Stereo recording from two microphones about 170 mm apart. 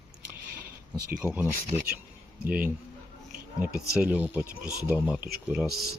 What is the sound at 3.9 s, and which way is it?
Speech, 5° right (ahead or behind).